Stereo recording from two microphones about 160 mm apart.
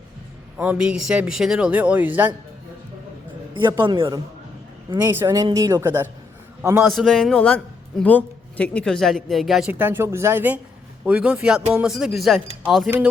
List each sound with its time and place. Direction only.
0.5 s a man's voice: 10° right (ahead or behind)
3.5 s speech: 30° right (ahead or behind)
4.9 s a man's voice: 20° right (ahead or behind)
6.9 s a man's voice: centre (ahead or behind)